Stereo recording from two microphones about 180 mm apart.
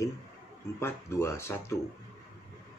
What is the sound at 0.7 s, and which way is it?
Speech, 15° left (ahead or behind).